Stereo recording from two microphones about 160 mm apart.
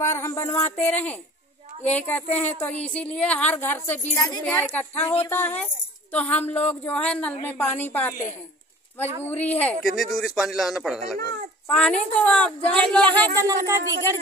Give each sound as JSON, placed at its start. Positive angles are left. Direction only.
{"t": 0.0, "sound": "a woman's voice", "side_deg": 15}
{"t": 4.5, "sound": "a woman's voice", "side_deg": 10}
{"t": 13.4, "sound": "speech", "side_deg": -20}